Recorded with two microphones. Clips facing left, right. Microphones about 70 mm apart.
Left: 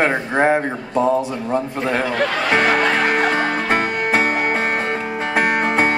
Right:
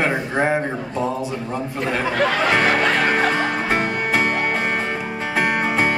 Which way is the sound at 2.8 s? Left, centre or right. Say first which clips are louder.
Left 1 dB; centre.